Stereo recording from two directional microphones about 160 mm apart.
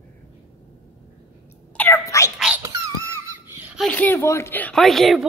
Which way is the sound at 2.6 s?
15° right (ahead or behind).